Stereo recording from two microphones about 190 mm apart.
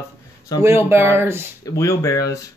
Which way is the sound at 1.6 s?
15° left (ahead or behind).